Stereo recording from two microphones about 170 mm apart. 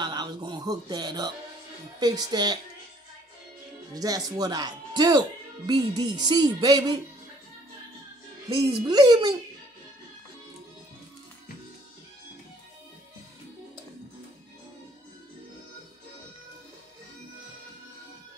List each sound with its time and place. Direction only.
0.0 s speech: 25° right (ahead or behind)
3.9 s speech: 20° right (ahead or behind)
8.5 s speech: 25° right (ahead or behind)